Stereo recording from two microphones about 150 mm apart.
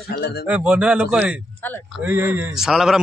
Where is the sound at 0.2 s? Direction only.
90° left.